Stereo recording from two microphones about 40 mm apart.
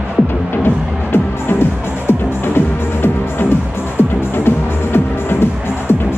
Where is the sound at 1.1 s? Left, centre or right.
Left.